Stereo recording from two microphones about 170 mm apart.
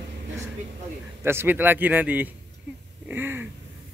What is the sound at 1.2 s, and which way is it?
Speech, 15° right (ahead or behind).